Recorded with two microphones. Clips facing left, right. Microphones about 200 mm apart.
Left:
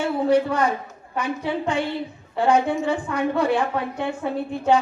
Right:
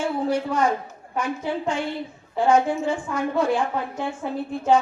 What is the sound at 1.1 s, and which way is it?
A woman's voice, 65° left (ahead or behind).